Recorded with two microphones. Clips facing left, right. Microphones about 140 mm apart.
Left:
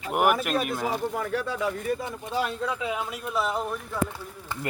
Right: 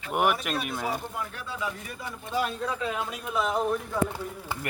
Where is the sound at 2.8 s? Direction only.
10° left (ahead or behind).